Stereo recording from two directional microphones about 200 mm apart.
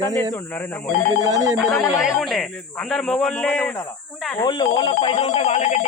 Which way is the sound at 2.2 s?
Centre (ahead or behind).